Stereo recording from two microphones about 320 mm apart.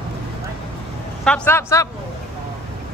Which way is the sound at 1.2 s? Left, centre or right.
Centre.